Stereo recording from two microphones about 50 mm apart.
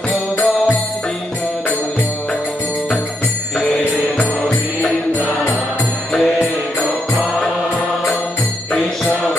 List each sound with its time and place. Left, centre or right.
6.1 s music: centre